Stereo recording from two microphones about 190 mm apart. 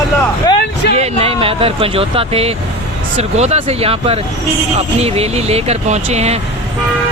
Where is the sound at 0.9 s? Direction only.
35° right (ahead or behind).